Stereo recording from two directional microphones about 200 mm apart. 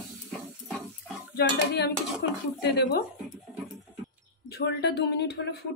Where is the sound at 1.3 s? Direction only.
55° left (ahead or behind).